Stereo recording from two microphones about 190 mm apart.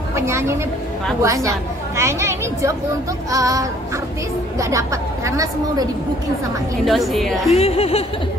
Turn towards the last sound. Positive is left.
turn(degrees=30)  # may be behind; listen again after turning